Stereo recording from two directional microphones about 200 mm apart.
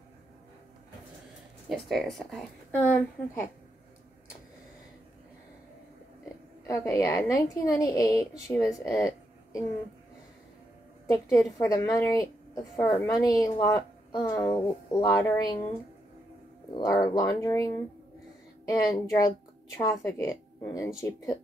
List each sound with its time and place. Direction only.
1.7 s a woman's voice: centre (ahead or behind)
6.7 s a woman's voice: 15° left (ahead or behind)
11.1 s a woman's voice: 15° left (ahead or behind)
16.7 s a woman's voice: 20° left (ahead or behind)